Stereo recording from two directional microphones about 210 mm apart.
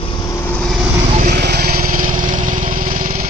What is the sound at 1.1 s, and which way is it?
Vehicle, 45° right (ahead or behind).